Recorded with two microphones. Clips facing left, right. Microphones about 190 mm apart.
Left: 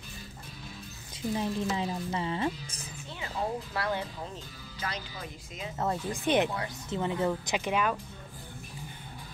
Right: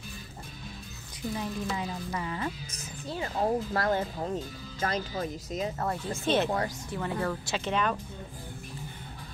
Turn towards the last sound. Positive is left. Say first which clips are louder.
# even
turn(degrees=10)  # may be behind; listen again after turning